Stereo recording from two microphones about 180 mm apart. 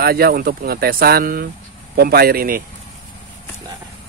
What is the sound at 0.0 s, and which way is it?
Speech, 60° right (ahead or behind).